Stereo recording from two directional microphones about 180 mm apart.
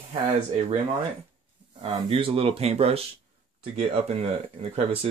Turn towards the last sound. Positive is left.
turn(degrees=-35)  # may be behind; listen again after turning